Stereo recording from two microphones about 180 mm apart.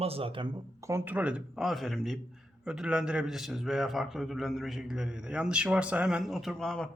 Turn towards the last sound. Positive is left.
turn(degrees=0)  # may be behind; listen again after turning